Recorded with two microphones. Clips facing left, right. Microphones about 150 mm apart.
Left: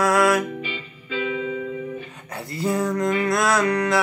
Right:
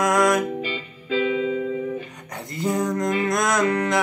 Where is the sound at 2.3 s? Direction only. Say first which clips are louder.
Even; 20° right (ahead or behind).